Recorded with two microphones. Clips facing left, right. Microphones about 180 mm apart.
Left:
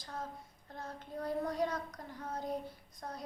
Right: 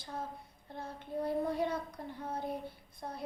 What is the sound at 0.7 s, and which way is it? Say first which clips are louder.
Child singing: right 4 dB; 30° right (ahead or behind).